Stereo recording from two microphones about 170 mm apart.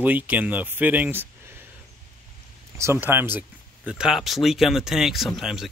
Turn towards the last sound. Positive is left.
turn(degrees=0)  # may be behind; listen again after turning